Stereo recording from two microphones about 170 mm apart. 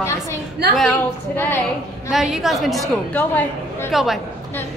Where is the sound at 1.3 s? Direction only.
15° left (ahead or behind).